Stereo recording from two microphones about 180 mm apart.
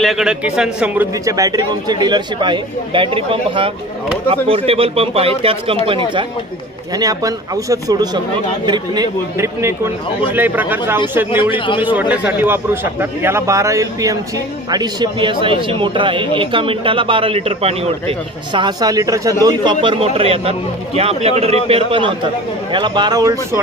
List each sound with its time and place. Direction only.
0.0 s a man's voice: centre (ahead or behind)
11.5 s a man's voice: 30° left (ahead or behind)
11.8 s a man's voice: 10° right (ahead or behind)